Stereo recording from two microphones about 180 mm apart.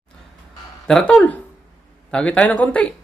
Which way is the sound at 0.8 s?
5° left (ahead or behind).